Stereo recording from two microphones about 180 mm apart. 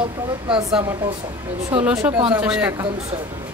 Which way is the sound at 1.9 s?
15° right (ahead or behind).